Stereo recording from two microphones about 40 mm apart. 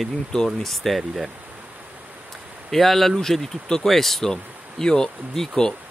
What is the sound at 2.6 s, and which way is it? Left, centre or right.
Speech, centre.